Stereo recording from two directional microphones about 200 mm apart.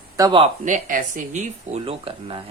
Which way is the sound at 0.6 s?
40° right (ahead or behind).